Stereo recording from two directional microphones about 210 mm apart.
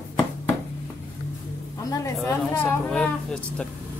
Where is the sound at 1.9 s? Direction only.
15° left (ahead or behind).